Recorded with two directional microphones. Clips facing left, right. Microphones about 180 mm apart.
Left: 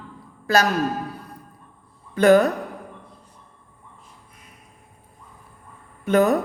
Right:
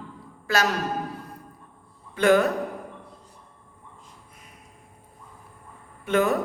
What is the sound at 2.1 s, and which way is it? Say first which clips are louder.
Speech: left 4 dB; 40° left (ahead or behind).